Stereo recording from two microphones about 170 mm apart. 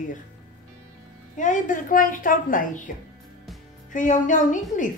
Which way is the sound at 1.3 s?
50° left (ahead or behind).